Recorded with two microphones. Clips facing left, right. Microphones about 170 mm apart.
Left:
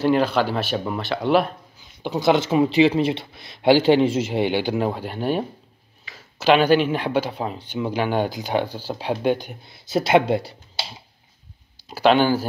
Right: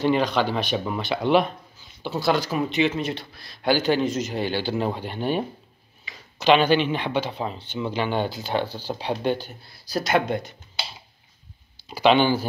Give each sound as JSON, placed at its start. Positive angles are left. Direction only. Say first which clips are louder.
{"t": 0.0, "sound": "speech", "louder": "left 2 dB", "side_deg": 5}
{"t": 2.0, "sound": "speech", "louder": "left 4 dB", "side_deg": 20}
{"t": 4.7, "sound": "speech", "louder": "left 2 dB", "side_deg": 5}
{"t": 11.7, "sound": "speech", "louder": "left 1 dB", "side_deg": 5}